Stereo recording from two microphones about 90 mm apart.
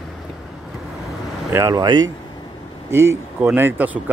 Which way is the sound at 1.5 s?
40° right (ahead or behind).